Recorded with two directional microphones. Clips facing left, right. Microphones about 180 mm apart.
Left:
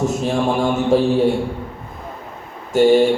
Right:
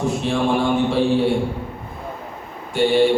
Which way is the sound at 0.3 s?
45° left (ahead or behind).